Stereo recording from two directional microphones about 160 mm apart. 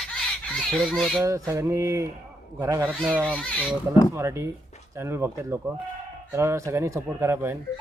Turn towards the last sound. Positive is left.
turn(degrees=-15)  # may be behind; listen again after turning